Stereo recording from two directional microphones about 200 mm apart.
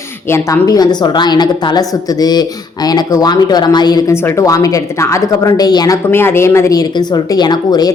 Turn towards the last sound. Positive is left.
turn(degrees=20)  # may be behind; listen again after turning